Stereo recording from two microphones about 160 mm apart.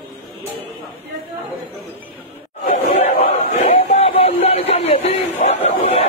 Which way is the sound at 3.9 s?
40° left (ahead or behind).